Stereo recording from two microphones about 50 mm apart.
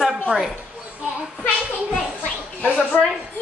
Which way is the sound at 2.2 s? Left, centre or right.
Left.